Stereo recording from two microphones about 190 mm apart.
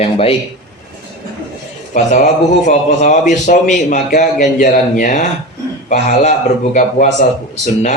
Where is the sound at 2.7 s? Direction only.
40° left (ahead or behind).